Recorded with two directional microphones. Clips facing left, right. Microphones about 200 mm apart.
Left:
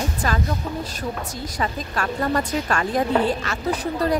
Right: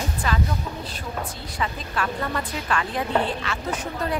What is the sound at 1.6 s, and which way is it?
Speech, 45° left (ahead or behind).